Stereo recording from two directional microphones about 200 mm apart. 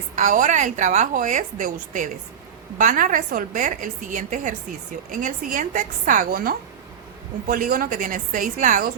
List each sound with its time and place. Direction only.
0.2 s a woman's voice: 40° right (ahead or behind)